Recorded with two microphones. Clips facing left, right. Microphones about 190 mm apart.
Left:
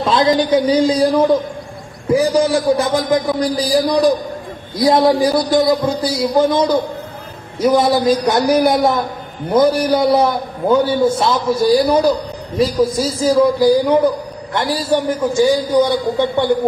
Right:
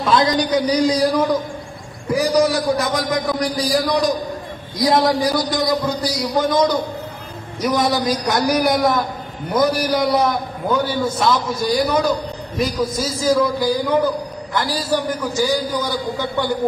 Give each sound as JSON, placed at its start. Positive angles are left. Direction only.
{"t": 0.0, "sound": "a man's voice", "side_deg": 25}